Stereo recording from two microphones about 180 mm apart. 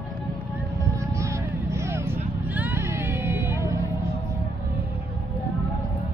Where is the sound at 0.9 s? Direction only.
15° right (ahead or behind).